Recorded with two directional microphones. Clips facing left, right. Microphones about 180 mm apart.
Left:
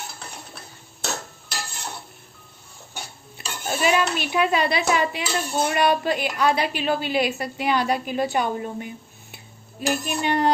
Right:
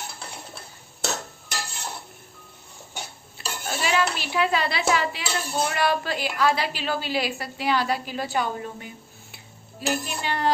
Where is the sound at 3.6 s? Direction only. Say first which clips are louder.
Left 3 dB; 20° left (ahead or behind).